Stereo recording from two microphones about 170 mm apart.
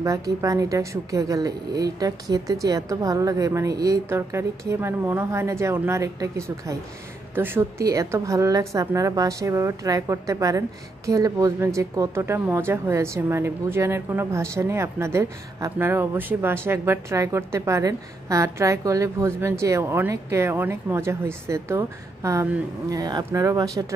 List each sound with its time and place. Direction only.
0.0 s a woman's voice: 20° right (ahead or behind)